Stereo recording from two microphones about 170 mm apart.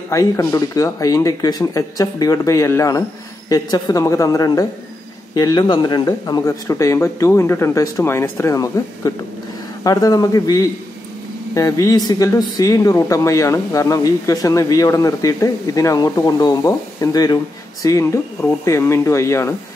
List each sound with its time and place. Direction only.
0.1 s speech: 20° left (ahead or behind)